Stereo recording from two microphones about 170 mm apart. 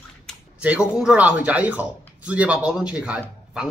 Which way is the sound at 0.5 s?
5° right (ahead or behind).